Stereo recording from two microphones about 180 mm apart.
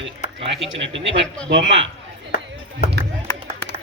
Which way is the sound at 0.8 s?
90° right.